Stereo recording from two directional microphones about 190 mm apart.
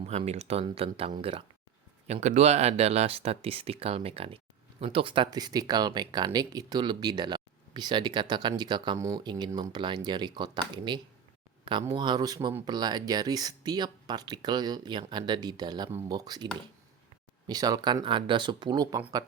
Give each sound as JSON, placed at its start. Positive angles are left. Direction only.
{"t": 0.0, "sound": "speech", "side_deg": -35}